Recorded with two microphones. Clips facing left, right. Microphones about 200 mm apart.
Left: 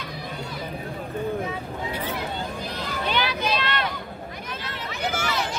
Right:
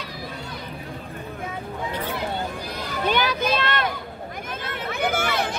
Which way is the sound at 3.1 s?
45° right (ahead or behind).